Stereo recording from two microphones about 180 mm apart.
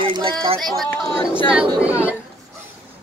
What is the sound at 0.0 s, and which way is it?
Speech, 30° right (ahead or behind).